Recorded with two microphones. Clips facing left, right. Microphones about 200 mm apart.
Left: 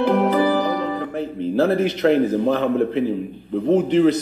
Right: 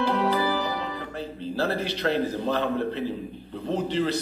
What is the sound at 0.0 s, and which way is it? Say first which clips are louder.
Music: left 7 dB; 55° left (ahead or behind).